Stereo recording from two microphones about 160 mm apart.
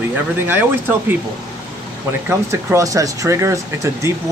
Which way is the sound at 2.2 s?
15° right (ahead or behind).